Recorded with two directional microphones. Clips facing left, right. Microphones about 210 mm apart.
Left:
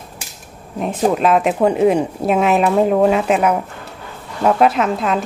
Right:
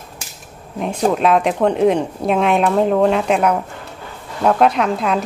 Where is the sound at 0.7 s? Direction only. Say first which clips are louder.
Left 1 dB; 5° left (ahead or behind).